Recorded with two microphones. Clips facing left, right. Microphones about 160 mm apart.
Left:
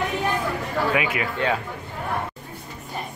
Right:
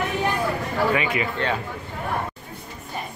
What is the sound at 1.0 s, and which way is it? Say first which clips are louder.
Speech: even; 5° left (ahead or behind).